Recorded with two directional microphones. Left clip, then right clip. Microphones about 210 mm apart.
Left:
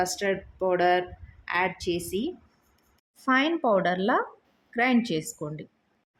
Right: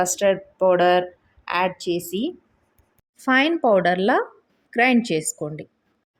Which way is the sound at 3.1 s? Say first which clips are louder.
Right 5 dB; 20° right (ahead or behind).